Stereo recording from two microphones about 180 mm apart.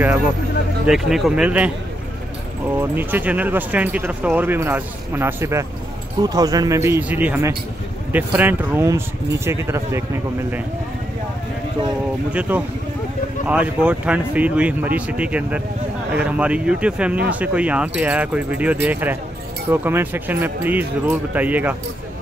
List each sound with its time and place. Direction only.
0.8 s speech: centre (ahead or behind)
2.8 s speech: 10° right (ahead or behind)
12.3 s speech: 10° right (ahead or behind)